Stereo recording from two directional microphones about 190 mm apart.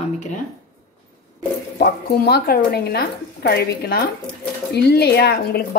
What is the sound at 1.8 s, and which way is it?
Speech, 55° left (ahead or behind).